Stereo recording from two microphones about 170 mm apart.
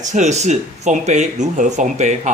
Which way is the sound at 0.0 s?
45° right (ahead or behind).